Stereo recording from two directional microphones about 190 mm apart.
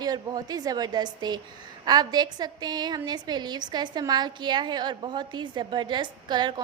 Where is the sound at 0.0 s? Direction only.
20° right (ahead or behind).